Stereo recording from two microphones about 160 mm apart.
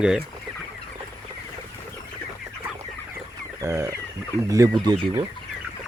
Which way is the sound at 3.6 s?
20° right (ahead or behind).